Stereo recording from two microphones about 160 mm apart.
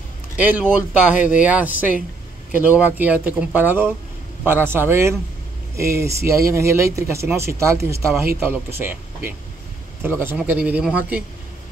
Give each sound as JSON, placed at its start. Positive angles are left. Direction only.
{"t": 0.4, "sound": "speech", "side_deg": -10}
{"t": 10.0, "sound": "speech", "side_deg": -15}